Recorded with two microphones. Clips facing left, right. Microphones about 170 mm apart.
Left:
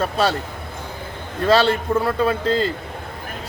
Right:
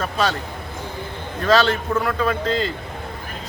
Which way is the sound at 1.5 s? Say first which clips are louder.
Left 1 dB; 30° left (ahead or behind).